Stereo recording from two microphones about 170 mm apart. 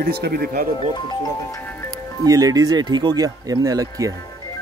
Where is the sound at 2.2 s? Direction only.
20° right (ahead or behind).